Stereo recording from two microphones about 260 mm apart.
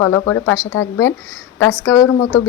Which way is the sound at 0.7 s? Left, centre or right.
Left.